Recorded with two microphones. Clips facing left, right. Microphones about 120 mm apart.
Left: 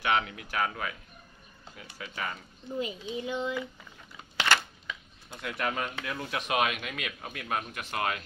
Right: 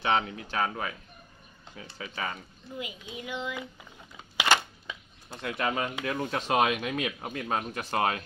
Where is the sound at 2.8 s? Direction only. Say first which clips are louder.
Left 6 dB; 30° left (ahead or behind).